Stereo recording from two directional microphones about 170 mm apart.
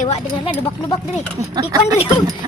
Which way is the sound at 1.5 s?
25° right (ahead or behind).